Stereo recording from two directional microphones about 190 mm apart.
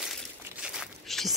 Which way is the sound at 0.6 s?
5° right (ahead or behind).